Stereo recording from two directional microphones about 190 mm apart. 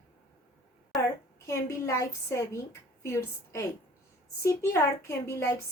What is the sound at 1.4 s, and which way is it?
A woman's voice, 15° left (ahead or behind).